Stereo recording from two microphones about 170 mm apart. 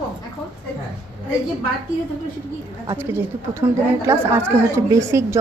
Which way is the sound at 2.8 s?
15° right (ahead or behind).